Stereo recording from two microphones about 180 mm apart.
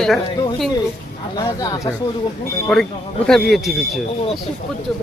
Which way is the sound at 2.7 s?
Centre (ahead or behind).